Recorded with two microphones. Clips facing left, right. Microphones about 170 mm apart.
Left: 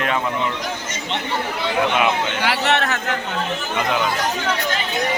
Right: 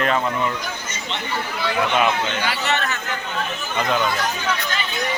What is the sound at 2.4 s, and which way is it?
Speech, 75° left (ahead or behind).